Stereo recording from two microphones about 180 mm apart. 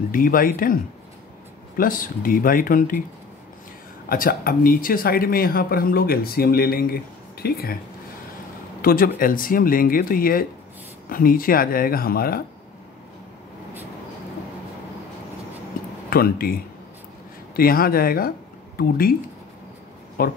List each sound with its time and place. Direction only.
0.1 s speech: 50° left (ahead or behind)
1.8 s speech: 50° left (ahead or behind)
4.1 s speech: 50° left (ahead or behind)
8.8 s speech: 50° left (ahead or behind)
16.1 s speech: 55° left (ahead or behind)
17.6 s speech: 55° left (ahead or behind)
20.2 s speech: 55° left (ahead or behind)